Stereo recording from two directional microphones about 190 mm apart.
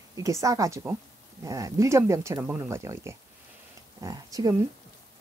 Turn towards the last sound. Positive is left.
turn(degrees=-20)  # may be behind; listen again after turning